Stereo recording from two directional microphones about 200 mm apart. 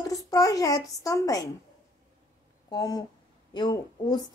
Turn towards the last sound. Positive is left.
turn(degrees=20)  # may be behind; listen again after turning